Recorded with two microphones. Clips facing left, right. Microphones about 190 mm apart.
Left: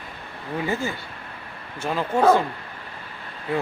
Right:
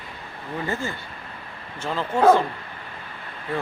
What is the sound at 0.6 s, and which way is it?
Speech, 10° left (ahead or behind).